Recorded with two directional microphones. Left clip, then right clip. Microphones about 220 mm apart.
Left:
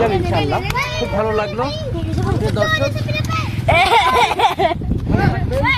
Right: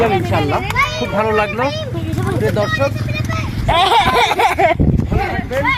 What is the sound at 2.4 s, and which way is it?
Speech, 35° right (ahead or behind).